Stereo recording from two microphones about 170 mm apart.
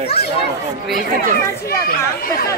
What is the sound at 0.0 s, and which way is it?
Speech, 35° left (ahead or behind).